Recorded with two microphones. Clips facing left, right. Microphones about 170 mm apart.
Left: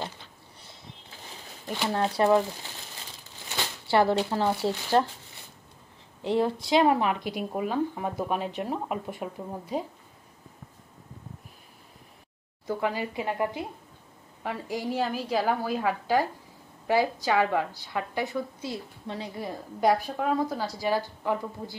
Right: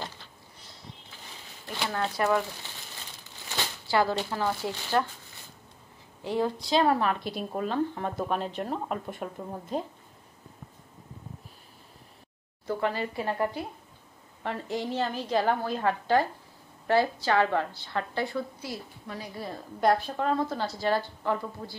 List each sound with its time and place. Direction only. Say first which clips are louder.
1.9 s speech: left 4 dB; 30° left (ahead or behind)
4.3 s speech: left 4 dB; 25° left (ahead or behind)
6.2 s a woman's voice: left 3 dB; 20° left (ahead or behind)
12.6 s a woman's voice: even; 10° left (ahead or behind)